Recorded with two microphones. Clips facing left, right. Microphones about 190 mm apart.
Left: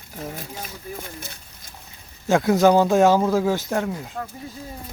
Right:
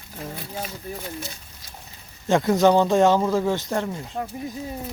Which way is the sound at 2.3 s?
Centre (ahead or behind).